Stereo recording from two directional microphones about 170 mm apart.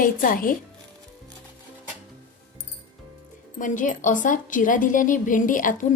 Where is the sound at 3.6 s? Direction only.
50° left (ahead or behind).